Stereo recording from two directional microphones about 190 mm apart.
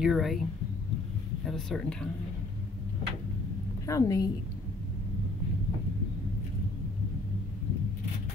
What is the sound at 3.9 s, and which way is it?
Speech, 15° left (ahead or behind).